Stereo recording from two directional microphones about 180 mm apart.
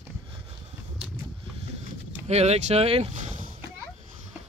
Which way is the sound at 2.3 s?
35° right (ahead or behind).